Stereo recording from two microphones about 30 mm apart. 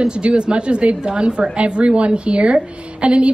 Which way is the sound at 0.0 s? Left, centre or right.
Right.